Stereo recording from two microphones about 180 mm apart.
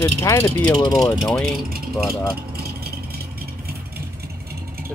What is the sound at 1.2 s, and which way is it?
Speech, centre (ahead or behind).